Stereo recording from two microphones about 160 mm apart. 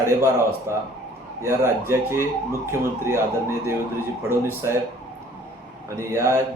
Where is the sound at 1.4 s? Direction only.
15° right (ahead or behind).